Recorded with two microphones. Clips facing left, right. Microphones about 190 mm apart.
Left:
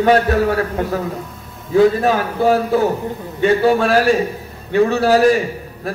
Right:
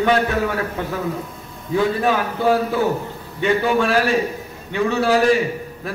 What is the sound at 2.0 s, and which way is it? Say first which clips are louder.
A man's voice: left 3 dB; 40° left (ahead or behind).